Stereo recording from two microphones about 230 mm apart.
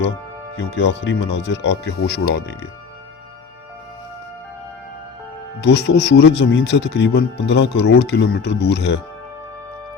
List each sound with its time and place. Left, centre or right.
0.5 s speech: left
5.5 s speech: left